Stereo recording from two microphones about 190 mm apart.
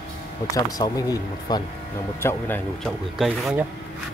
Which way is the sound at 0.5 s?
20° left (ahead or behind).